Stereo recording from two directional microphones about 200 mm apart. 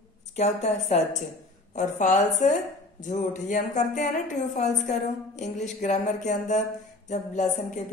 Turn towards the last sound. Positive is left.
turn(degrees=35)  # may be behind; listen again after turning